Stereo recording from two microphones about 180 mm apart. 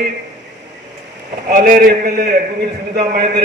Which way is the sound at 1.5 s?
50° right (ahead or behind).